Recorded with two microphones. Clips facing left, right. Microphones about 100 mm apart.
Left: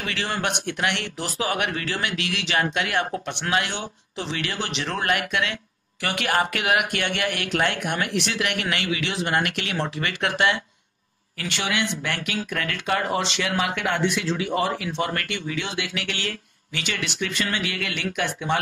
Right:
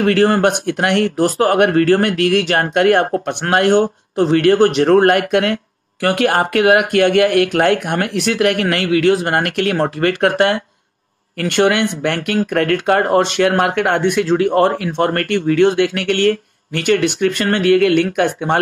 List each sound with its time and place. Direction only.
0.0 s speech: 50° right (ahead or behind)